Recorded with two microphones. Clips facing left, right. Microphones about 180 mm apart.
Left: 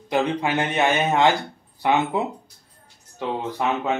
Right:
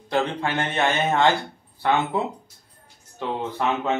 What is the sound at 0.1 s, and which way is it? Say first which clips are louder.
Speech: left 2 dB; 15° left (ahead or behind).